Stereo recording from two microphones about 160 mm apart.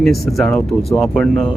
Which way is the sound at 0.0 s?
Centre (ahead or behind).